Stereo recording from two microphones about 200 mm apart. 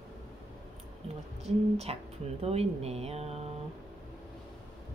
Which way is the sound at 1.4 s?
30° right (ahead or behind).